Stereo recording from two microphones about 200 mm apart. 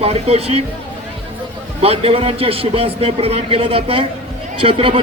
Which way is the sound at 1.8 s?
30° right (ahead or behind).